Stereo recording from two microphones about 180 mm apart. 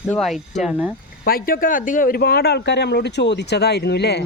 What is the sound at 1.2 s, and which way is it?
Speech, 55° left (ahead or behind).